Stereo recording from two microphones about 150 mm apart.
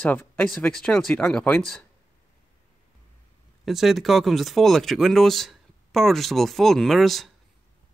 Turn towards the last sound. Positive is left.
turn(degrees=0)  # may be behind; listen again after turning